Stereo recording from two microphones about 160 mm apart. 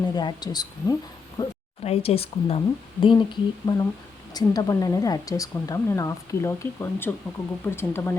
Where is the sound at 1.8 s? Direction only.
40° left (ahead or behind).